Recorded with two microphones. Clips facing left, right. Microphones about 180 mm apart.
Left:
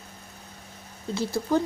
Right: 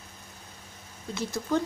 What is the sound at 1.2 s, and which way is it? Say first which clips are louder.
Speech: left 3 dB; 30° left (ahead or behind).